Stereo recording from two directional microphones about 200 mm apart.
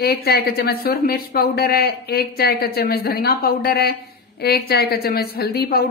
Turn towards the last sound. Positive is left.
turn(degrees=50)  # may be behind; listen again after turning